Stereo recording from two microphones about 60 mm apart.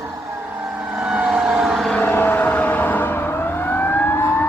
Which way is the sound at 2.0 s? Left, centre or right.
Left.